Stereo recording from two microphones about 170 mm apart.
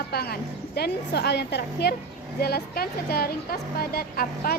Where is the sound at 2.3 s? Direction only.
65° left (ahead or behind).